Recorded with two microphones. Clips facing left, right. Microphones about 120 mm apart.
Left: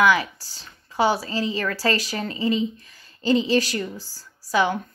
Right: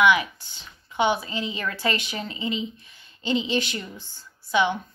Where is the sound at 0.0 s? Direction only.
35° left (ahead or behind).